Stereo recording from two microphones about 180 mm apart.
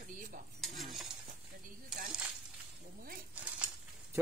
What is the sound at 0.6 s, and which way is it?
Stir, centre (ahead or behind).